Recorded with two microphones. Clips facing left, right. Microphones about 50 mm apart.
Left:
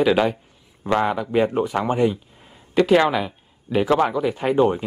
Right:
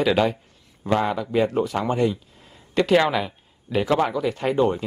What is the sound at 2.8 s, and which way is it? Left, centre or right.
Speech, centre.